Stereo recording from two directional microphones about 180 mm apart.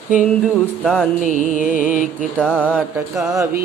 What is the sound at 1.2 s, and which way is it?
Music, 45° right (ahead or behind).